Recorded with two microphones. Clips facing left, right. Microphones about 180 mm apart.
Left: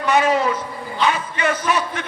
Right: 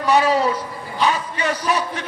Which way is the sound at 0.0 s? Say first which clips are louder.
Right 1 dB; 35° right (ahead or behind).